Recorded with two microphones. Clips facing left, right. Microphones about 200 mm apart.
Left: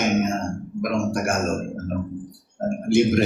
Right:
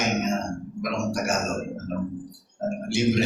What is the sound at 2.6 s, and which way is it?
Music, 55° left (ahead or behind).